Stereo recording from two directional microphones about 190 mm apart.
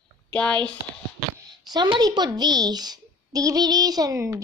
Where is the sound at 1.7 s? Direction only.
20° right (ahead or behind).